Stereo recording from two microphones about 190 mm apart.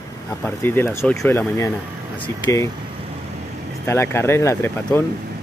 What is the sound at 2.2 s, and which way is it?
Speech, 20° left (ahead or behind).